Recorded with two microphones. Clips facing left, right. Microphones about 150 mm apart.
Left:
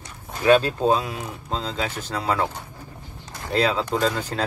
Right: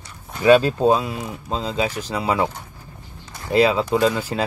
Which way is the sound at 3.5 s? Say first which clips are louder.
Right 5 dB; 10° right (ahead or behind).